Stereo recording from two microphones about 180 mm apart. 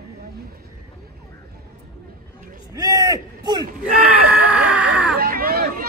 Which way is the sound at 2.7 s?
20° right (ahead or behind).